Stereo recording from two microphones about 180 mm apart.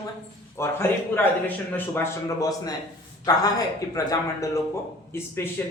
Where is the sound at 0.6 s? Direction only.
15° left (ahead or behind).